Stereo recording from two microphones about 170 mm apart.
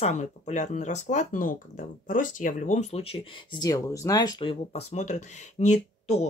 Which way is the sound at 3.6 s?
20° left (ahead or behind).